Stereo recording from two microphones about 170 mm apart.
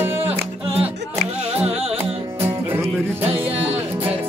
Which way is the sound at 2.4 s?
15° right (ahead or behind).